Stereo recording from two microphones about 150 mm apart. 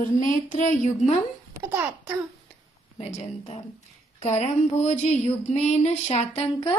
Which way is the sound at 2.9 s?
45° left (ahead or behind).